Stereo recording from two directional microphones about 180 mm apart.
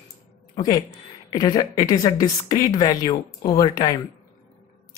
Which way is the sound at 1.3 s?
20° left (ahead or behind).